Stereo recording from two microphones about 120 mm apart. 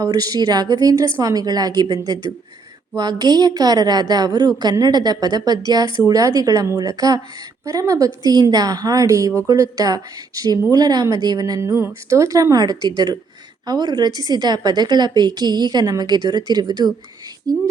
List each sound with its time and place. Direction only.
0.0 s a woman's voice: 30° right (ahead or behind)